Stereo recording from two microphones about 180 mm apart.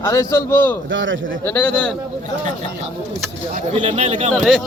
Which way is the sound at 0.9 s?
90° right.